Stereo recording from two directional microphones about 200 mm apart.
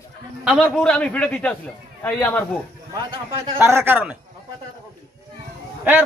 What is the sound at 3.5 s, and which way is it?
Speech, 10° right (ahead or behind).